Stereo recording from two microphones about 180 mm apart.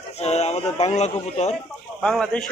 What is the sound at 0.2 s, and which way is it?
A child's voice, 35° left (ahead or behind).